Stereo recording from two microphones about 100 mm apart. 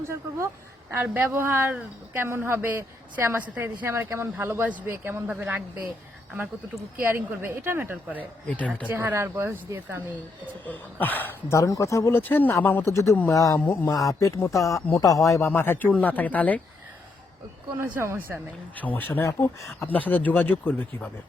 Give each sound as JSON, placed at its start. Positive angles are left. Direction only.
{"t": 0.1, "sound": "a woman's voice", "side_deg": -25}
{"t": 6.7, "sound": "a woman's voice", "side_deg": -25}
{"t": 8.2, "sound": "speech", "side_deg": 15}
{"t": 8.9, "sound": "a woman's voice", "side_deg": -20}
{"t": 10.7, "sound": "speech", "side_deg": 20}
{"t": 17.7, "sound": "a woman's voice", "side_deg": -20}
{"t": 18.8, "sound": "speech", "side_deg": 15}